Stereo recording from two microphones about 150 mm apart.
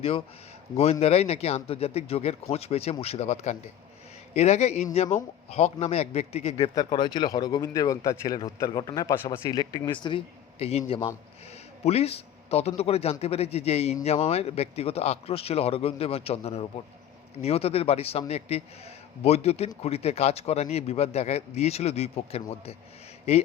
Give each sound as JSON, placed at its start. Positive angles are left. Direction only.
{"t": 0.8, "sound": "a man's voice", "side_deg": 45}
{"t": 6.7, "sound": "a man's voice", "side_deg": 30}